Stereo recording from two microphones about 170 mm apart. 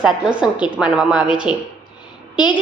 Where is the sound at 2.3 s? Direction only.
25° left (ahead or behind).